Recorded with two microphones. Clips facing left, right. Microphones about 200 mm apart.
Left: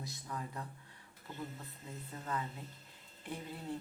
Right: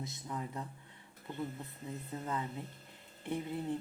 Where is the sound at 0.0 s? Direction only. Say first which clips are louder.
Right 3 dB; 20° right (ahead or behind).